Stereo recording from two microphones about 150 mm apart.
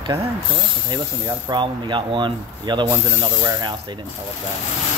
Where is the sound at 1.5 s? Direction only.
30° right (ahead or behind).